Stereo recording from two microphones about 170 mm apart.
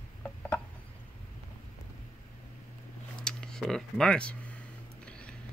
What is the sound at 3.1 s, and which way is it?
Computer keyboard, 5° left (ahead or behind).